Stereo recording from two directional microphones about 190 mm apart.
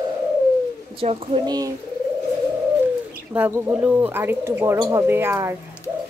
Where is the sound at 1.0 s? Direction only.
30° right (ahead or behind).